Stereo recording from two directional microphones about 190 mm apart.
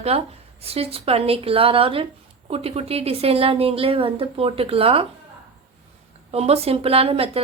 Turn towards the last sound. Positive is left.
turn(degrees=-30)  # may be behind; listen again after turning